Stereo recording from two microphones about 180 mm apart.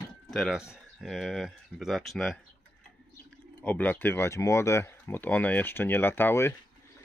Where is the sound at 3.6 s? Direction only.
10° left (ahead or behind).